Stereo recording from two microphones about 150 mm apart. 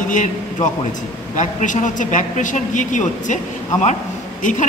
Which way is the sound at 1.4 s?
55° left (ahead or behind).